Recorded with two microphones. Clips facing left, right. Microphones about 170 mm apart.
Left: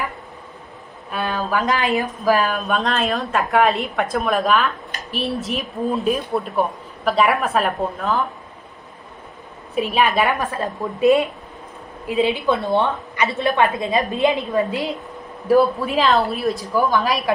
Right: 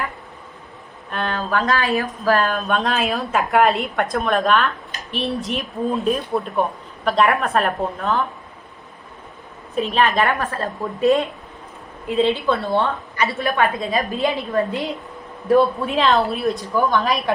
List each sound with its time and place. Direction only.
1.1 s a woman's voice: 5° left (ahead or behind)
1.6 s a woman's voice: 20° left (ahead or behind); by 8.2 s centre (ahead or behind)
9.8 s a woman's voice: 10° left (ahead or behind)
14.7 s speech: centre (ahead or behind)